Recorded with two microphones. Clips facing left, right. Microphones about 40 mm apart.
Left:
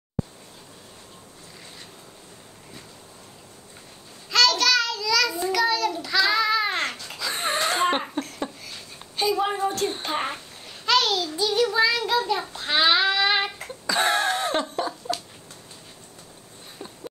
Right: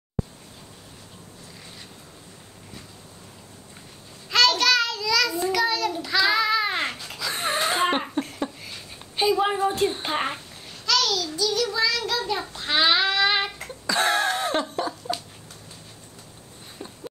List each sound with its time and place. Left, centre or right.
4.3 s child singing: centre
5.9 s babbling: centre
8.6 s a sound: centre
10.0 s a child's voice: centre
10.9 s child singing: left
12.3 s child singing: centre
16.7 s a sound: centre